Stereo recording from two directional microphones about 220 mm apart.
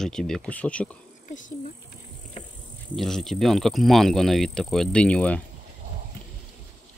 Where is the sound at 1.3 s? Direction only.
35° left (ahead or behind).